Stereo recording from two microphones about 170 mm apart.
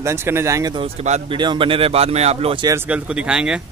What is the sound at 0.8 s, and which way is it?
Speech, 40° right (ahead or behind).